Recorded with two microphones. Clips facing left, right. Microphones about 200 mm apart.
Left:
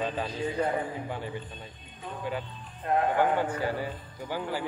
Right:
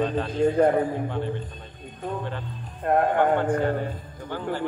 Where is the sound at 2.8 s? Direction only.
55° right (ahead or behind).